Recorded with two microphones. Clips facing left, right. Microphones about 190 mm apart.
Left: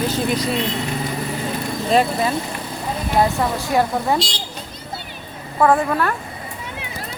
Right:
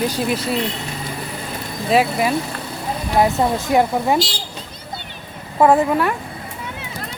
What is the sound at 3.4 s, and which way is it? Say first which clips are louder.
Speech: right 3 dB; 20° right (ahead or behind).